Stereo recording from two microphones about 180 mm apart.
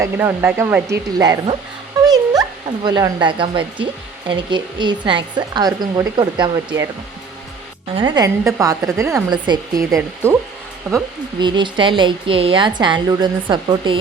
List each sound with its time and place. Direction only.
0.0 s a woman's voice: 10° right (ahead or behind)
7.9 s a woman's voice: 25° right (ahead or behind)
11.3 s a woman's voice: 25° right (ahead or behind)